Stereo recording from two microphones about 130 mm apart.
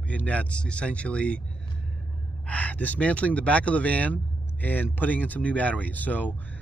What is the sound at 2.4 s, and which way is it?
Speech, 10° left (ahead or behind).